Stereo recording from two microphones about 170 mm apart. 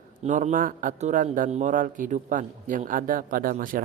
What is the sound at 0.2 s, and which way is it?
Speech, 45° right (ahead or behind).